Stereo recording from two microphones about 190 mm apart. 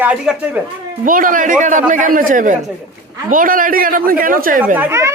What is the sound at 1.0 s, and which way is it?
Speech, 45° right (ahead or behind).